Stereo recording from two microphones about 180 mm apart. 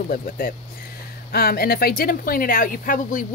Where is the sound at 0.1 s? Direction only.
55° left (ahead or behind).